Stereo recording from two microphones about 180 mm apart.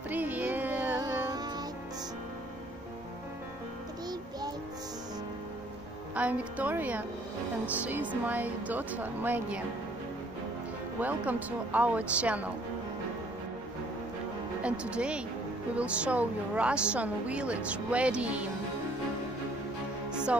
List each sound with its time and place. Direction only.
0.1 s music: 10° right (ahead or behind)
0.9 s music: 20° right (ahead or behind)
6.1 s a woman's voice: 10° right (ahead or behind)
11.0 s a woman's voice: 10° right (ahead or behind)
14.6 s a woman's voice: 5° right (ahead or behind)